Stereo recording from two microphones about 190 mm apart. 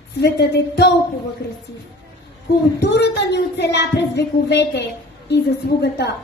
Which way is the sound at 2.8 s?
65° left (ahead or behind).